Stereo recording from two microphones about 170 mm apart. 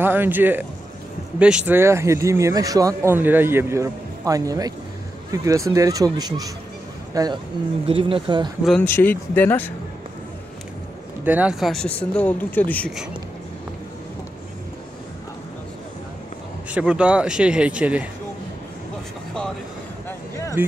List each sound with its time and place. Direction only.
0.0 s speech: 10° right (ahead or behind)
7.8 s speech: 30° right (ahead or behind)
8.8 s speech: 10° left (ahead or behind)
11.2 s speech: 10° right (ahead or behind); by 12.9 s 10° left (ahead or behind)
16.7 s speech: 5° right (ahead or behind)
20.1 s a sound: 20° left (ahead or behind)